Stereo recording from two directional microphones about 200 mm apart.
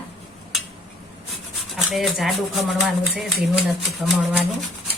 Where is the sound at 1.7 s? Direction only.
Centre (ahead or behind).